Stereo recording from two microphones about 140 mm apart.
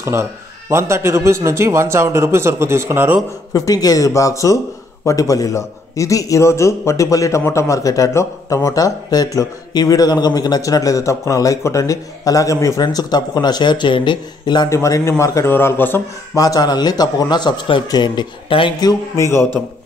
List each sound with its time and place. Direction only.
0.0 s a man's voice: 20° right (ahead or behind)
3.5 s a man's voice: 25° left (ahead or behind)
16.3 s a man's voice: 25° left (ahead or behind)